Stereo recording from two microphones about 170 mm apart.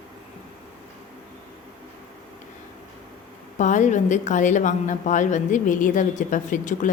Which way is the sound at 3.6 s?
45° left (ahead or behind).